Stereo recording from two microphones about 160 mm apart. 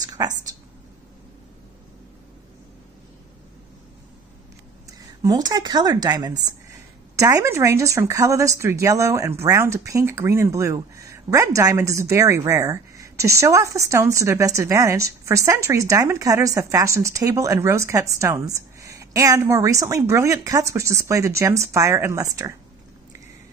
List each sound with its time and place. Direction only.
0.2 s speech: 20° right (ahead or behind)
5.2 s speech: 25° right (ahead or behind)